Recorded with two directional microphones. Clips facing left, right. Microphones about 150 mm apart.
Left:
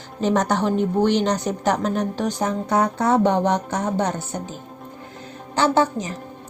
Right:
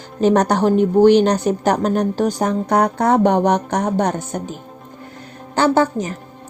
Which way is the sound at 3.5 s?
65° right (ahead or behind).